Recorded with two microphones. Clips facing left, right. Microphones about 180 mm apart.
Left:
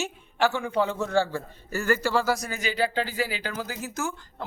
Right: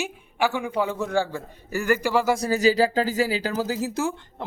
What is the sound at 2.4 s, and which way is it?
A man's voice, 40° right (ahead or behind).